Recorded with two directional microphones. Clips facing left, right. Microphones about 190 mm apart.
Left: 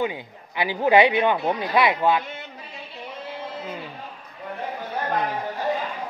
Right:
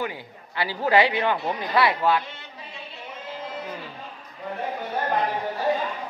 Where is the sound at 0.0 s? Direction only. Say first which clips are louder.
Left 4 dB; 20° left (ahead or behind).